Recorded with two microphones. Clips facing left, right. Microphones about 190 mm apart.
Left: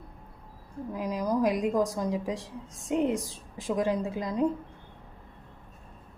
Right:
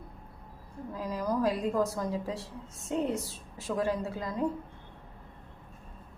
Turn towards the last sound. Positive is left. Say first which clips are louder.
# left 4 dB
turn(degrees=20)  # may be behind; listen again after turning